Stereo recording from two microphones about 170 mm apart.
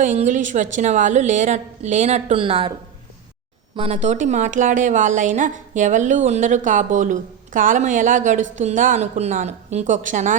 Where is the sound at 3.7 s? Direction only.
40° right (ahead or behind).